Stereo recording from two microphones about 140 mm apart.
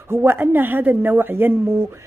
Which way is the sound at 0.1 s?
15° right (ahead or behind).